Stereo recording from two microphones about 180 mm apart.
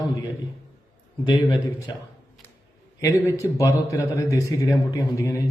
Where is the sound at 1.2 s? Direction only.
25° left (ahead or behind).